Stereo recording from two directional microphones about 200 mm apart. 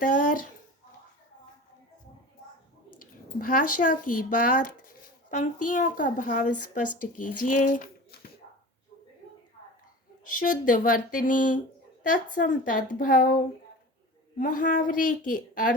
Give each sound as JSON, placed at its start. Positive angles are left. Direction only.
{"t": 0.0, "sound": "speech", "side_deg": 40}
{"t": 3.0, "sound": "speech", "side_deg": 45}
{"t": 10.2, "sound": "a woman's voice", "side_deg": 40}